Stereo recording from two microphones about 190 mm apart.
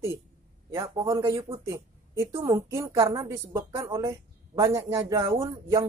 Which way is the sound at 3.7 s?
25° right (ahead or behind).